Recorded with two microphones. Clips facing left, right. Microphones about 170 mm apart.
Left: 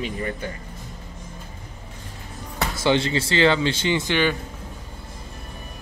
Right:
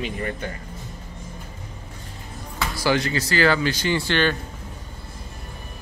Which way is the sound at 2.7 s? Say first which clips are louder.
Left 1 dB; 25° left (ahead or behind).